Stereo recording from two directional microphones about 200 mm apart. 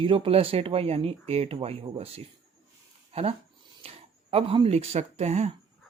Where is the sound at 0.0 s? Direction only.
25° right (ahead or behind).